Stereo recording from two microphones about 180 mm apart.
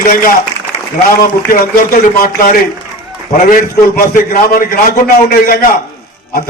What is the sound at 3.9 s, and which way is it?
A man's voice, 50° left (ahead or behind).